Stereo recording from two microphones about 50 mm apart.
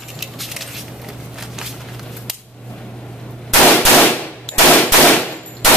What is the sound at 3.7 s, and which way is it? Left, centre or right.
Clang, left.